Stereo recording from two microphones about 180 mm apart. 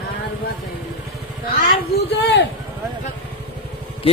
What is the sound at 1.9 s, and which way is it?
Speech, 65° left (ahead or behind).